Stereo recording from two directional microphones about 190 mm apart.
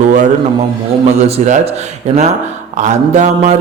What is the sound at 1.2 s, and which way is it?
Speech, 35° right (ahead or behind).